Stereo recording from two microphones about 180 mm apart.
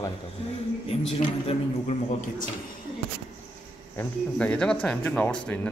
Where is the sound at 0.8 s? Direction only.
35° left (ahead or behind).